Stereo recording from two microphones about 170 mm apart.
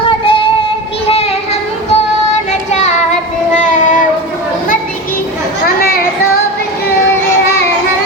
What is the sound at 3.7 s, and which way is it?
Child singing, 45° left (ahead or behind).